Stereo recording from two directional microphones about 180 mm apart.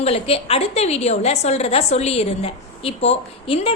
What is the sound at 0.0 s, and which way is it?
A woman's voice, 35° left (ahead or behind).